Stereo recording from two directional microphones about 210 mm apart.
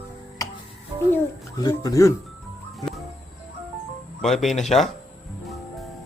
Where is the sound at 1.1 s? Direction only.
20° left (ahead or behind).